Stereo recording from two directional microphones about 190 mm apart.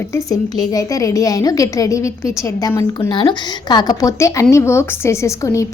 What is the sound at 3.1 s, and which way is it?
A woman's voice, 25° left (ahead or behind).